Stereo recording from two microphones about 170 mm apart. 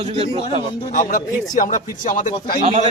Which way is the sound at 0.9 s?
50° left (ahead or behind).